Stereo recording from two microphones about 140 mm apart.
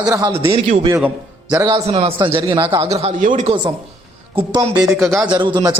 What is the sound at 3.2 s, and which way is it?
Speech, 70° right (ahead or behind).